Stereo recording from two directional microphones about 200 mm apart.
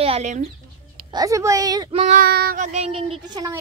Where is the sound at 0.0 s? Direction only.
30° right (ahead or behind).